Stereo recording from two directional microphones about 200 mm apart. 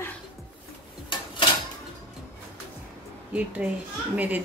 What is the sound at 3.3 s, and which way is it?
Speech, 5° right (ahead or behind).